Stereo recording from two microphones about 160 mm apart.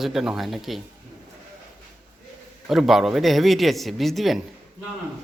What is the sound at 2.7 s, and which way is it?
A man's voice, centre (ahead or behind).